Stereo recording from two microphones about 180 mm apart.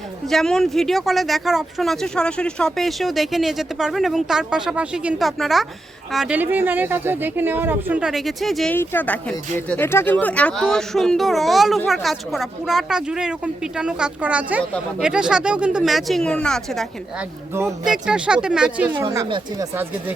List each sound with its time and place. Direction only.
0.3 s speech: centre (ahead or behind)
8.7 s speech: 10° left (ahead or behind)
17.5 s speech: 15° right (ahead or behind)
18.9 s speech: 25° right (ahead or behind)